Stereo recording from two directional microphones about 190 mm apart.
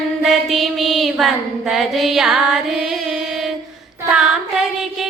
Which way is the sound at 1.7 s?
Centre (ahead or behind).